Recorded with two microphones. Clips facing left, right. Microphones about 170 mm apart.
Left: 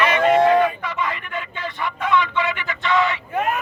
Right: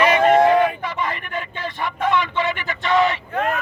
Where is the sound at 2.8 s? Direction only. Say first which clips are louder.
Right 2 dB; 35° right (ahead or behind).